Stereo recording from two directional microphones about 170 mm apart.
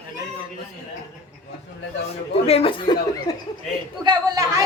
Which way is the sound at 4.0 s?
25° right (ahead or behind).